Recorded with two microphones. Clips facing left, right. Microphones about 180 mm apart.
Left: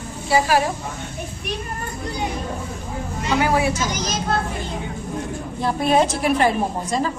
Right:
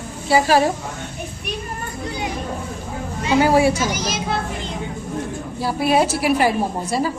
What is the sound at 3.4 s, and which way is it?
Speech, 35° right (ahead or behind).